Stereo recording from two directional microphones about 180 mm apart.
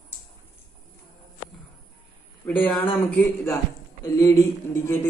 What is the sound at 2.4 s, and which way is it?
A man's voice, 10° left (ahead or behind).